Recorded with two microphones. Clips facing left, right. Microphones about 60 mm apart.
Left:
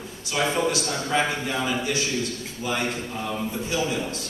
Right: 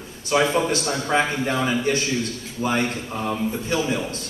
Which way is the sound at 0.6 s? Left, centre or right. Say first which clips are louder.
Right 2 dB; right.